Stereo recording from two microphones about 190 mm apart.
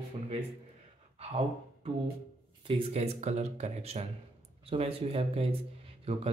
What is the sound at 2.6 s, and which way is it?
A man's voice, 30° right (ahead or behind).